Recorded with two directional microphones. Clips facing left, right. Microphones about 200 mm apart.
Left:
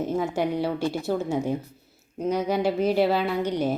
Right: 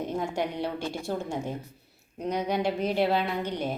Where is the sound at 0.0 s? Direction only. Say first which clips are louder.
Left 4 dB; 5° left (ahead or behind).